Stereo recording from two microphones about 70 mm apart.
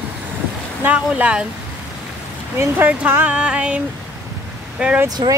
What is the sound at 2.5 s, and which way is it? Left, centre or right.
Speech, right.